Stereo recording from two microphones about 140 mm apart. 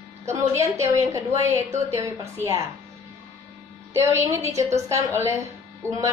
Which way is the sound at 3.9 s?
20° right (ahead or behind).